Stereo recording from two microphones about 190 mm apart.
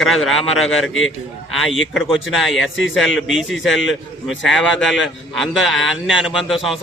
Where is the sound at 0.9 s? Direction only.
90° left.